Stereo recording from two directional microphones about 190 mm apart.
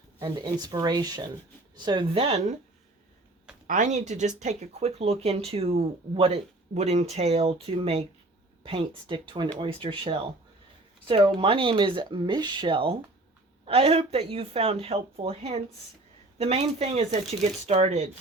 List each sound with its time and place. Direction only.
0.2 s speech: 20° right (ahead or behind)
3.7 s speech: 40° right (ahead or behind)